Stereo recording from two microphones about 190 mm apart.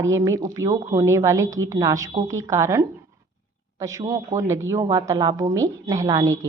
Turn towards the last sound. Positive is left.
turn(degrees=-15)  # may be behind; listen again after turning